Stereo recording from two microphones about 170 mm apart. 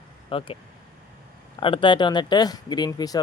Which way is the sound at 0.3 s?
30° left (ahead or behind).